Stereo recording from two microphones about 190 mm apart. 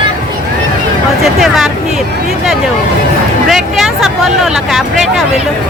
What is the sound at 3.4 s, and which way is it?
Speech, centre (ahead or behind).